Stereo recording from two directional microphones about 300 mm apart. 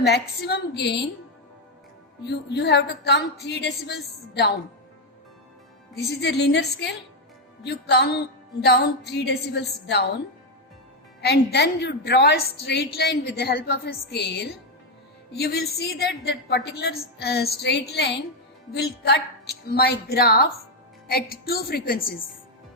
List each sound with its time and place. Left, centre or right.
0.0 s a woman's voice: left
2.2 s a woman's voice: left
6.1 s a woman's voice: left
11.2 s a woman's voice: left